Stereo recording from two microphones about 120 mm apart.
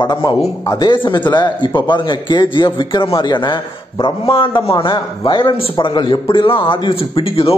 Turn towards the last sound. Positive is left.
turn(degrees=50)  # may be behind; listen again after turning